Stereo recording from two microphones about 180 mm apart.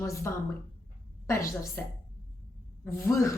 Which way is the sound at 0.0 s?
15° left (ahead or behind).